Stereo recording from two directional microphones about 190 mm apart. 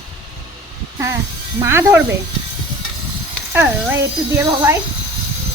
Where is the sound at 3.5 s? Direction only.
10° right (ahead or behind).